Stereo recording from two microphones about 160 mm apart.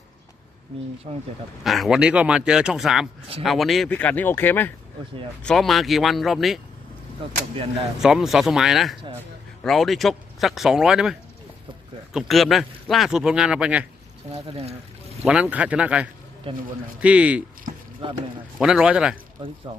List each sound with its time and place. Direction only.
1.1 s speech: 40° right (ahead or behind)
1.6 s a man's voice: centre (ahead or behind)
3.9 s a man's voice: 10° left (ahead or behind)
8.0 s a man's voice: 5° right (ahead or behind)
14.5 s speech: 40° right (ahead or behind)
15.2 s speech: 5° right (ahead or behind)
18.0 s speech: 35° right (ahead or behind)
18.6 s a man's voice: 5° right (ahead or behind)
19.7 s speech: 35° right (ahead or behind)